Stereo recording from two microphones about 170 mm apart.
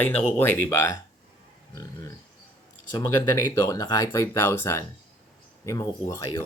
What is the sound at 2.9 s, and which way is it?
Speech, 15° left (ahead or behind).